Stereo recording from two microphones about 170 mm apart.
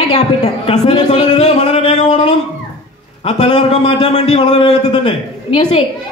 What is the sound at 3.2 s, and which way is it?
A woman's voice, 40° left (ahead or behind).